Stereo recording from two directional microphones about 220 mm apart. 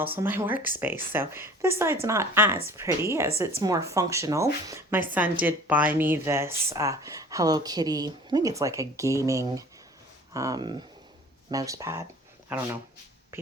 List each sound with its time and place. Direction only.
0.2 s speech: 10° right (ahead or behind)